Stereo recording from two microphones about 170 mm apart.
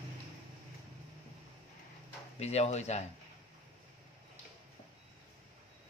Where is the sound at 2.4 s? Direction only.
40° left (ahead or behind).